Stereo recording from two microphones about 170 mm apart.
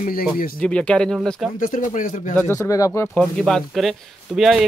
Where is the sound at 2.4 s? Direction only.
15° left (ahead or behind).